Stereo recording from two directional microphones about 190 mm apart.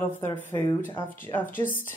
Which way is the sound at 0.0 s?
10° left (ahead or behind).